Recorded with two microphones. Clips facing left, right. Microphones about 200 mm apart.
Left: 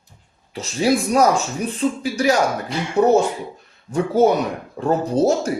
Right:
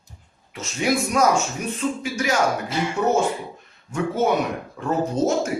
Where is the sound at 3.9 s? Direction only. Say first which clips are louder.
Left 5 dB; 35° left (ahead or behind).